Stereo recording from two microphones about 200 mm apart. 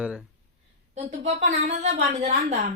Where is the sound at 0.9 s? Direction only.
35° right (ahead or behind).